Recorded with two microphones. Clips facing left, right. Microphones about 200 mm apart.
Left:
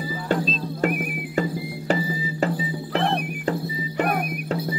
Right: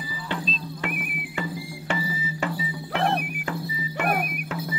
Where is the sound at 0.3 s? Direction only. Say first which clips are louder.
Left 8 dB; 45° left (ahead or behind).